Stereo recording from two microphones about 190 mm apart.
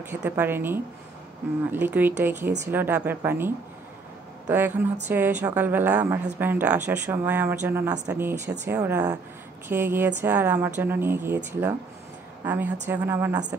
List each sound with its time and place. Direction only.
0.0 s speech: 10° right (ahead or behind)